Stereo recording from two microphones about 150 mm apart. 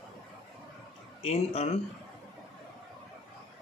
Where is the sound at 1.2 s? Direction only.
40° left (ahead or behind).